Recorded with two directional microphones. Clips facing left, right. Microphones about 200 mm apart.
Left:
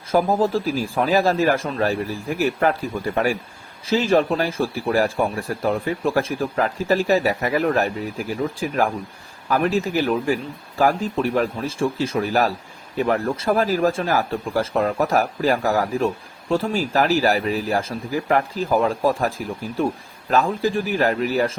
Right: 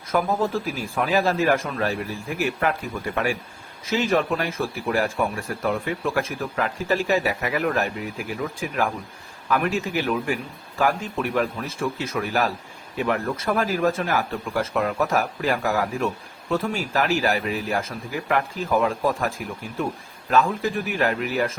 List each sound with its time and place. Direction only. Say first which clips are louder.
0.1 s speech: left 4 dB; 35° left (ahead or behind)